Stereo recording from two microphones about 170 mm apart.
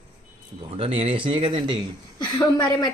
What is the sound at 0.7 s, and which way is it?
Speech, 35° right (ahead or behind).